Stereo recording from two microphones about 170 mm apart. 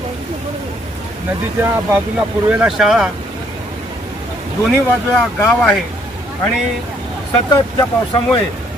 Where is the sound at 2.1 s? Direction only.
5° right (ahead or behind).